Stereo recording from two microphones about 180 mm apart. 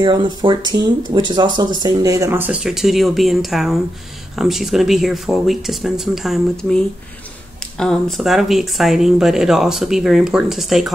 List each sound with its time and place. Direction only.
0.0 s speech: 25° right (ahead or behind); by 10.9 s centre (ahead or behind)